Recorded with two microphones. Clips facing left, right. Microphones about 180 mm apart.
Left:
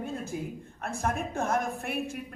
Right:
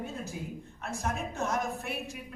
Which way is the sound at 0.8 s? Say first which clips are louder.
Left 3 dB; 55° left (ahead or behind).